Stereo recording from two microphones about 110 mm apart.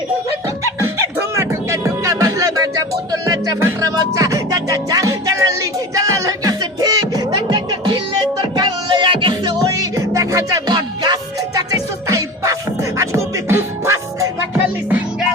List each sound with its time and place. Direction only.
0.4 s music: 25° right (ahead or behind)
7.3 s music: 45° right (ahead or behind)
9.6 s music: 30° right (ahead or behind)